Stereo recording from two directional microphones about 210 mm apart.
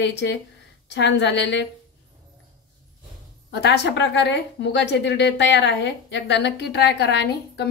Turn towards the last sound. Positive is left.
turn(degrees=55)  # may be behind; listen again after turning